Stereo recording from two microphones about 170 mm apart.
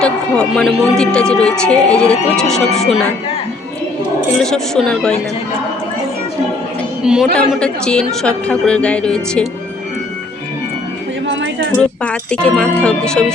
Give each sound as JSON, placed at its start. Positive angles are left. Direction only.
{"t": 0.0, "sound": "speech", "side_deg": 5}
{"t": 4.4, "sound": "speech", "side_deg": 5}
{"t": 7.0, "sound": "a man's voice", "side_deg": -5}
{"t": 11.3, "sound": "a sound", "side_deg": -90}
{"t": 11.8, "sound": "speech", "side_deg": 5}